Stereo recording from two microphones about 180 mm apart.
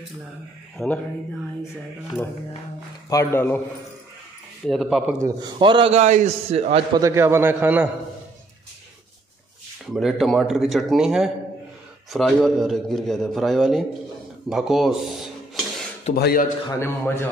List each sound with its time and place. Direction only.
0.8 s a man's voice: centre (ahead or behind)
3.1 s a man's voice: 15° left (ahead or behind)
4.6 s a man's voice: centre (ahead or behind)
5.2 s a man's voice: 25° right (ahead or behind)
7.0 s a man's voice: 15° right (ahead or behind)
9.9 s a man's voice: centre (ahead or behind)
14.5 s dishes: centre (ahead or behind)
16.2 s a man's voice: 60° left (ahead or behind)
16.8 s a man's voice: 15° left (ahead or behind)